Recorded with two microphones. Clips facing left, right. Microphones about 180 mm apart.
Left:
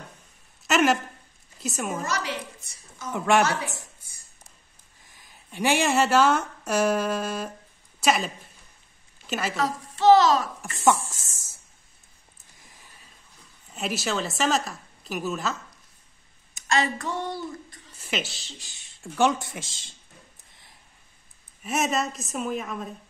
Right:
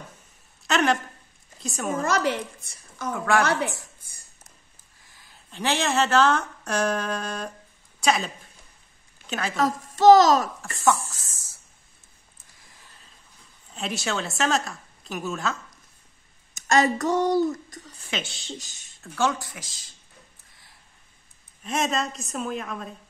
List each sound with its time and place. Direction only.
0.7 s a woman's voice: 5° left (ahead or behind)
2.0 s a woman's voice: 55° right (ahead or behind)
3.1 s speech: 20° left (ahead or behind)
5.1 s a woman's voice: 15° left (ahead or behind)
9.6 s a woman's voice: 40° right (ahead or behind)
10.8 s speech: 20° left (ahead or behind)
13.7 s a woman's voice: 5° left (ahead or behind)
16.5 s a child's voice: 45° right (ahead or behind)
18.0 s a woman's voice: 5° left (ahead or behind)
18.5 s speech: 45° right (ahead or behind)
19.1 s speech: 20° left (ahead or behind)
21.6 s a woman's voice: 5° left (ahead or behind)